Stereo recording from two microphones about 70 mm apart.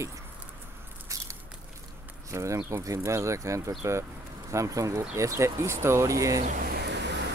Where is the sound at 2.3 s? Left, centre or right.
Right.